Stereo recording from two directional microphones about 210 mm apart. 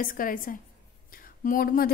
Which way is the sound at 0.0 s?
40° left (ahead or behind).